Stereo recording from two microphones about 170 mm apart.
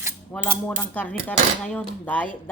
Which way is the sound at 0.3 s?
10° left (ahead or behind).